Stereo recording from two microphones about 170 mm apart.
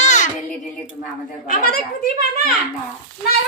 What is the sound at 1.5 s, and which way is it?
Speech, 60° left (ahead or behind).